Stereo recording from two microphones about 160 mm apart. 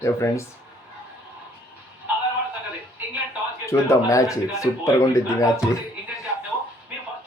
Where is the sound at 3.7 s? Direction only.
20° left (ahead or behind).